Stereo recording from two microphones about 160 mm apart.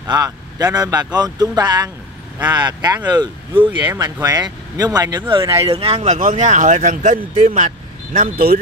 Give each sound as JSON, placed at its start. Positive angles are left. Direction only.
{"t": 0.1, "sound": "speech", "side_deg": -25}